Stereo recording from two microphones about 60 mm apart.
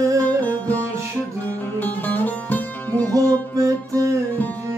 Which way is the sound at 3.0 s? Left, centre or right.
Right.